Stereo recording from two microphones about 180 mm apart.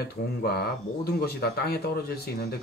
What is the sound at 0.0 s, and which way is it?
Speech, 60° left (ahead or behind).